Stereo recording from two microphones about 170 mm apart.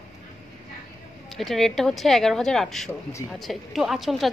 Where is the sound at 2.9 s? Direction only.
15° left (ahead or behind).